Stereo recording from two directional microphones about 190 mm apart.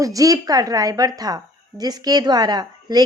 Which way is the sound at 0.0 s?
20° right (ahead or behind).